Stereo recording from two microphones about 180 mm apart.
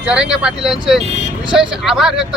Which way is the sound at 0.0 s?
5° right (ahead or behind).